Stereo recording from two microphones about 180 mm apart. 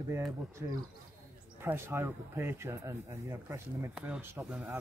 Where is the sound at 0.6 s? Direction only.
20° right (ahead or behind).